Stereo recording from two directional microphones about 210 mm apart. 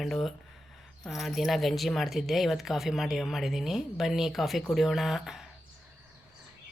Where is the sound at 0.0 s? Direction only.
Centre (ahead or behind).